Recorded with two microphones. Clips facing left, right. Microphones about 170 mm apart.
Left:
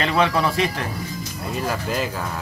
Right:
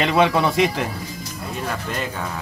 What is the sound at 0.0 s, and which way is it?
Speech, 15° right (ahead or behind).